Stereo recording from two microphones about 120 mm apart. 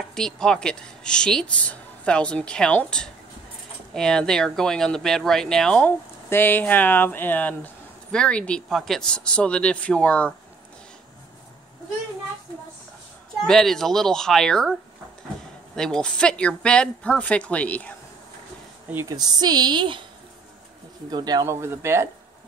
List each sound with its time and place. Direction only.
0.1 s speech: 5° left (ahead or behind)
13.5 s speech: 5° left (ahead or behind)
19.0 s a woman's voice: 35° right (ahead or behind)
21.1 s a woman's voice: 35° right (ahead or behind)
21.5 s speech: 20° right (ahead or behind)